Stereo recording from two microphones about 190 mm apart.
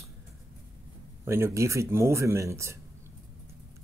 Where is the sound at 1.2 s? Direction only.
15° right (ahead or behind).